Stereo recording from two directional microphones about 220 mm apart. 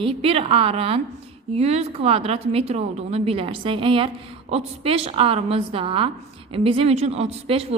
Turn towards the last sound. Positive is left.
turn(degrees=-25)  # may be behind; listen again after turning